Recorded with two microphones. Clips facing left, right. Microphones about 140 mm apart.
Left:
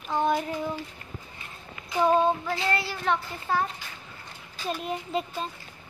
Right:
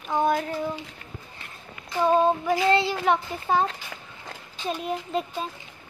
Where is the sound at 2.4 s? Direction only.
20° right (ahead or behind).